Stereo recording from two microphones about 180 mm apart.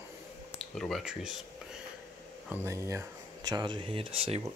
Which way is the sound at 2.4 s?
15° right (ahead or behind).